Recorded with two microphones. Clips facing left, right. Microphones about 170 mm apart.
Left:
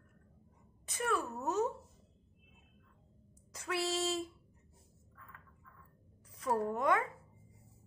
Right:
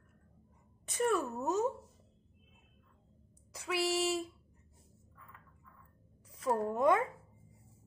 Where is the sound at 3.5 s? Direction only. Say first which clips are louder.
Right 2 dB; 10° right (ahead or behind).